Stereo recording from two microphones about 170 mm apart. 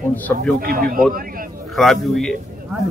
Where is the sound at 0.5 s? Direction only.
60° right (ahead or behind).